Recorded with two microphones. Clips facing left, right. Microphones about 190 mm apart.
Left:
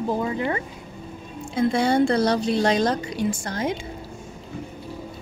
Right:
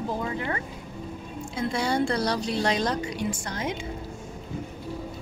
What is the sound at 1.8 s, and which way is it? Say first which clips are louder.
Speech: left 5 dB; 25° left (ahead or behind).